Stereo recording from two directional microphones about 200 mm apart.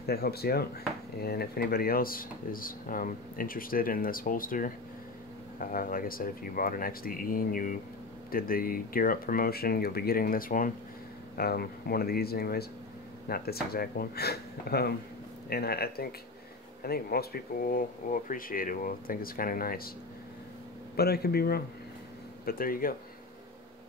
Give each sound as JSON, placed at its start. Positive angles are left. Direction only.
{"t": 0.0, "sound": "speech", "side_deg": 50}
{"t": 20.9, "sound": "speech", "side_deg": 50}